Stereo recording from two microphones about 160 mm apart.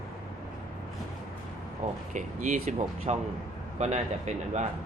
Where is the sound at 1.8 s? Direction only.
45° right (ahead or behind).